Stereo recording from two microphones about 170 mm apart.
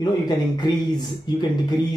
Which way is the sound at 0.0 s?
25° left (ahead or behind).